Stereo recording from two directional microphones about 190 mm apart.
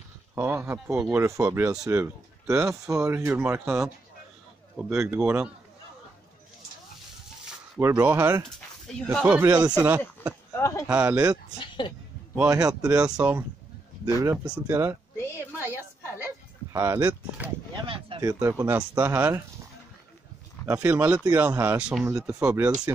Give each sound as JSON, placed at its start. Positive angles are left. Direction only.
{"t": 0.4, "sound": "speech", "side_deg": -15}
{"t": 4.7, "sound": "speech", "side_deg": -5}
{"t": 7.8, "sound": "speech", "side_deg": -10}
{"t": 8.8, "sound": "speech", "side_deg": 5}
{"t": 9.2, "sound": "speech", "side_deg": -10}
{"t": 10.5, "sound": "speech", "side_deg": 15}
{"t": 10.9, "sound": "speech", "side_deg": -10}
{"t": 11.6, "sound": "a woman's voice", "side_deg": 25}
{"t": 12.4, "sound": "speech", "side_deg": -20}
{"t": 15.5, "sound": "a sound", "side_deg": -10}
{"t": 16.7, "sound": "speech", "side_deg": -15}
{"t": 17.8, "sound": "a sound", "side_deg": -30}
{"t": 18.2, "sound": "speech", "side_deg": -15}
{"t": 20.6, "sound": "speech", "side_deg": -10}